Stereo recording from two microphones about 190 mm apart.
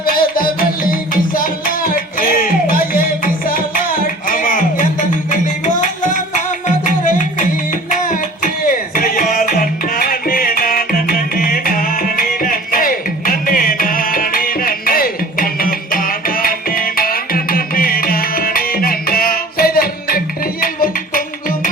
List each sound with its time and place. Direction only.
0.0 s music: 50° left (ahead or behind)